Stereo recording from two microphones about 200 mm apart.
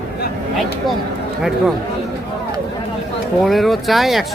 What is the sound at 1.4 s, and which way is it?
Speech, centre (ahead or behind).